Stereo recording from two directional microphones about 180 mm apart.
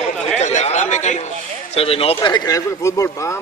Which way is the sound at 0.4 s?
40° left (ahead or behind).